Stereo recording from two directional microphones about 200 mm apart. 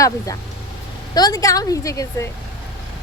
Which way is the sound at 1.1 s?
20° left (ahead or behind).